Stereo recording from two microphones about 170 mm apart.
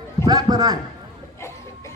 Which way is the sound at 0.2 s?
25° right (ahead or behind).